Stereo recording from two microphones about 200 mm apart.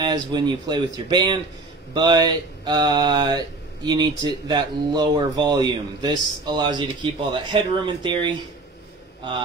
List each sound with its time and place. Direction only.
0.0 s speech: 20° right (ahead or behind)